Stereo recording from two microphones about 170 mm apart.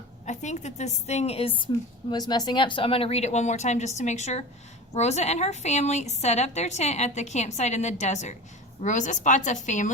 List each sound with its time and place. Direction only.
0.3 s a woman's voice: 45° left (ahead or behind)